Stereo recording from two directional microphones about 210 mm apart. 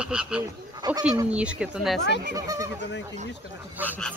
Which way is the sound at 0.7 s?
20° right (ahead or behind).